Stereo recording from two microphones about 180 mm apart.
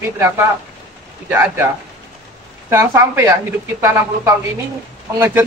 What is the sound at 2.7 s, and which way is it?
Speech, 15° right (ahead or behind).